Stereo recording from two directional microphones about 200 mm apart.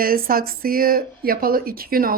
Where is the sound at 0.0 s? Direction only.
45° right (ahead or behind).